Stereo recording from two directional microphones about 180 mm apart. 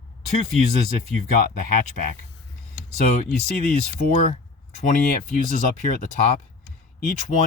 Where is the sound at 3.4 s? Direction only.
55° left (ahead or behind).